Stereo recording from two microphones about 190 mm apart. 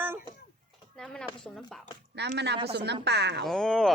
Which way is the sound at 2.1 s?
60° right (ahead or behind).